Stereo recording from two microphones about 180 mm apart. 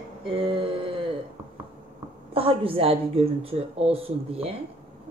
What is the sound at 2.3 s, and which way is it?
A woman's voice, 30° right (ahead or behind).